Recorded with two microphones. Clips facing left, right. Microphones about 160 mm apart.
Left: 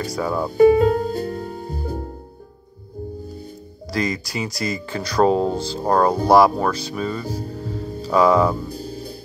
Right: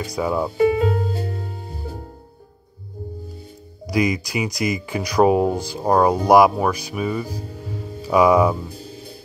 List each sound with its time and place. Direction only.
0.0 s speech: 15° right (ahead or behind)
0.6 s music: 40° left (ahead or behind)
3.9 s speech: 15° right (ahead or behind)
8.5 s music: 40° left (ahead or behind)